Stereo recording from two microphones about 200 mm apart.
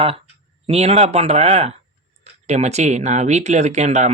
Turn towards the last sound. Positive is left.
turn(degrees=-35)  # may be behind; listen again after turning